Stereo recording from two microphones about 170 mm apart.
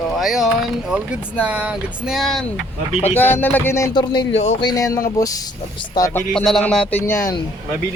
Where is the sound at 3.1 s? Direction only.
10° left (ahead or behind).